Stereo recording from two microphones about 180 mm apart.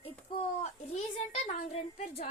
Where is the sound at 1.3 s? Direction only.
35° left (ahead or behind).